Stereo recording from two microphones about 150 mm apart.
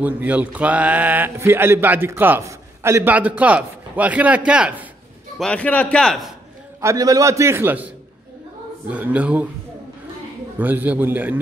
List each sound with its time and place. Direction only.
0.0 s speech: 10° right (ahead or behind)
5.4 s a man's voice: 10° left (ahead or behind)
6.8 s a man's voice: 20° right (ahead or behind)
10.6 s speech: 10° right (ahead or behind)